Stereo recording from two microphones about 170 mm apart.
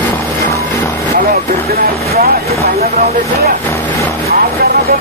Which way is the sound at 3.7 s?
10° left (ahead or behind).